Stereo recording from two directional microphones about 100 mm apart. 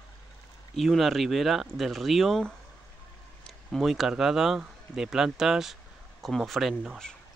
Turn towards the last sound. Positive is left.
turn(degrees=-5)  # may be behind; listen again after turning